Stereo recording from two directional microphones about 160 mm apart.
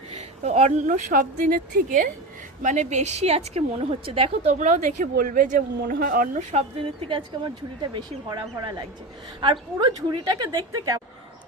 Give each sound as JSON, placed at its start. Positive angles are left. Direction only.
{"t": 0.1, "sound": "a woman's voice", "side_deg": -40}